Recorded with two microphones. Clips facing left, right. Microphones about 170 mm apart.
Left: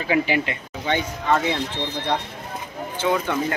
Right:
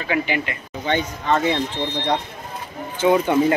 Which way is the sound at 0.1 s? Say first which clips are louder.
Left 2 dB; 30° left (ahead or behind).